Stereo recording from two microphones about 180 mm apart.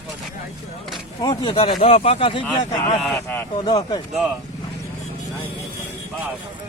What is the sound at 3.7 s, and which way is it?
Speech, 25° left (ahead or behind).